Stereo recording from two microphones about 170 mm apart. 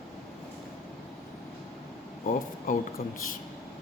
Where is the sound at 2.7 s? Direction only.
50° left (ahead or behind).